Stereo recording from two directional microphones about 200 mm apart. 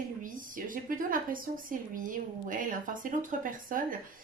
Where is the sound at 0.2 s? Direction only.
40° right (ahead or behind).